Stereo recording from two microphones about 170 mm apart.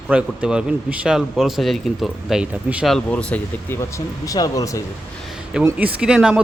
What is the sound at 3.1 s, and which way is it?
Speech, 10° left (ahead or behind).